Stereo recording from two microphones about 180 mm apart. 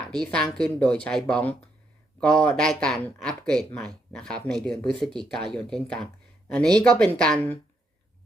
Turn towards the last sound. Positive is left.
turn(degrees=5)  # may be behind; listen again after turning